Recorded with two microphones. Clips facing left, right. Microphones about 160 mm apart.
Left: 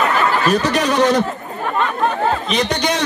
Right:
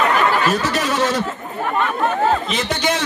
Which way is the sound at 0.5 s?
15° left (ahead or behind).